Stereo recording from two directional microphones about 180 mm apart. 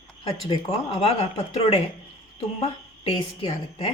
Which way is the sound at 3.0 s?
35° left (ahead or behind).